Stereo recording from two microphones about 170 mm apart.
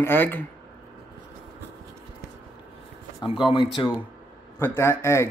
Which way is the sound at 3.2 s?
30° left (ahead or behind).